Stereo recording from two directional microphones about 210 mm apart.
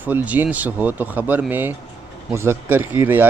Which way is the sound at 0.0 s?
10° right (ahead or behind).